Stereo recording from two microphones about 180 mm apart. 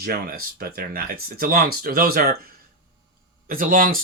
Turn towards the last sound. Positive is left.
turn(degrees=-50)  # may be behind; listen again after turning